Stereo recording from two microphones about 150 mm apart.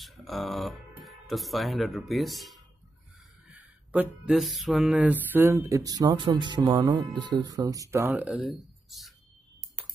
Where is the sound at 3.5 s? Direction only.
10° right (ahead or behind); by 7.8 s 25° right (ahead or behind).